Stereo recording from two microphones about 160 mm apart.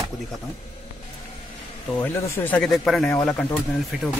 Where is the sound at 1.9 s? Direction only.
15° left (ahead or behind).